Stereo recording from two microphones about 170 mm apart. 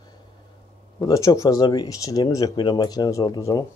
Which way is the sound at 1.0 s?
20° left (ahead or behind).